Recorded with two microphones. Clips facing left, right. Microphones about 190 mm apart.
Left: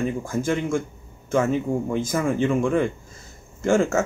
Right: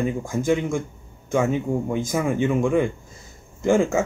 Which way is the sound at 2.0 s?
15° right (ahead or behind).